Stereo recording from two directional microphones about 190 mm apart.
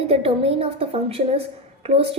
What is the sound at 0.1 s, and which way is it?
A woman's voice, 30° right (ahead or behind).